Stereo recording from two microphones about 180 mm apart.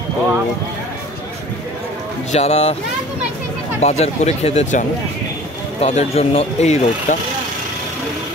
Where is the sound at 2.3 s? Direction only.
35° left (ahead or behind).